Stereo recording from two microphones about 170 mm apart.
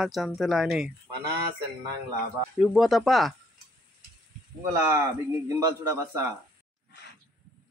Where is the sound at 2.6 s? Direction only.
Centre (ahead or behind).